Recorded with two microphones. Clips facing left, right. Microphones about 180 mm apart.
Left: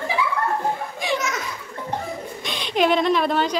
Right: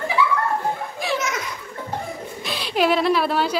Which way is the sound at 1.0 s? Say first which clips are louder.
Left 1 dB; centre (ahead or behind).